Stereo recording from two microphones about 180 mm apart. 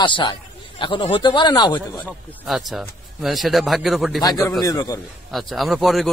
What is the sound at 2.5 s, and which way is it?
A man's voice, centre (ahead or behind).